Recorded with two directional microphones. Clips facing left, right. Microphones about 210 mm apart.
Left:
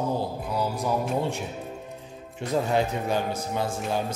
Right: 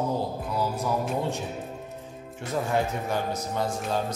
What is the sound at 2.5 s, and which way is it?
A man's voice, 15° left (ahead or behind).